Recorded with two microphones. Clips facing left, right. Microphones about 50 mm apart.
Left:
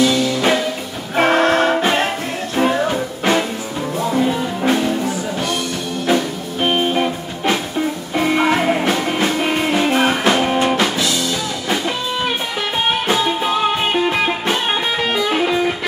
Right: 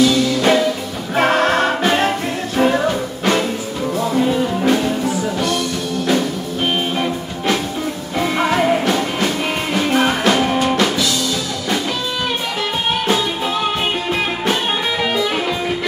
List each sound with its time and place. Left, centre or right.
0.0 s music: centre
1.1 s music: centre
2.9 s music: centre
6.0 s music: centre
14.0 s music: centre